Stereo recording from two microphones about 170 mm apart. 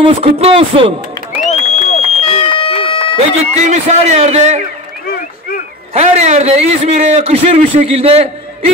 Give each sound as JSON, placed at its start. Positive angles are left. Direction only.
{"t": 0.0, "sound": "a man's voice", "side_deg": -35}
{"t": 1.4, "sound": "run", "side_deg": 40}
{"t": 3.2, "sound": "a man's voice", "side_deg": -40}
{"t": 5.9, "sound": "a man's voice", "side_deg": -40}